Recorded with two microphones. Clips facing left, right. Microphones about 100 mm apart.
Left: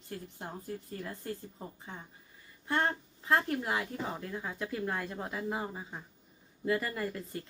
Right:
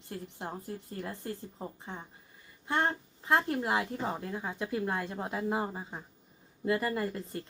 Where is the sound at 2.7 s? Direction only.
20° right (ahead or behind).